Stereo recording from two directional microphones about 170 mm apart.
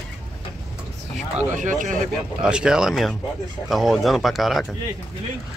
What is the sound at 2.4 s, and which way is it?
Speech, 5° right (ahead or behind).